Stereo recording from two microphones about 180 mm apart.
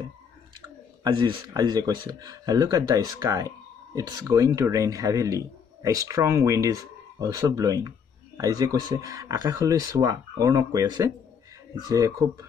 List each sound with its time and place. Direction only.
0.6 s speech: 25° right (ahead or behind)